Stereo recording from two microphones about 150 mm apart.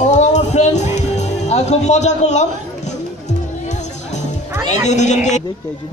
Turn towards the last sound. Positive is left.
turn(degrees=50)  # may be behind; listen again after turning